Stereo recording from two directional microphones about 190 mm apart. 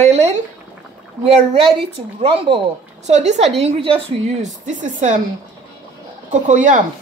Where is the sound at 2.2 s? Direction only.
30° right (ahead or behind).